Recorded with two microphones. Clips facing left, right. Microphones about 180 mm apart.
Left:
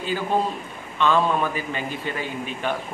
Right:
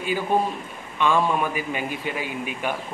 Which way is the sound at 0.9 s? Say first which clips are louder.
Left 1 dB; 10° right (ahead or behind).